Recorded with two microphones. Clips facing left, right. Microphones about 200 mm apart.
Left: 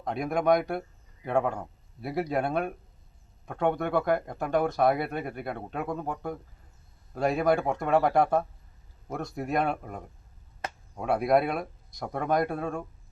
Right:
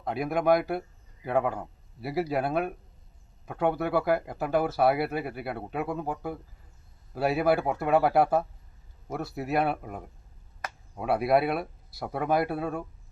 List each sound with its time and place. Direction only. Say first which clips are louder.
0.0 s speech: even; 5° right (ahead or behind)